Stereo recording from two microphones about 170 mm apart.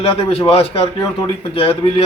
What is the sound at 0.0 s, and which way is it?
A man's voice, 35° left (ahead or behind).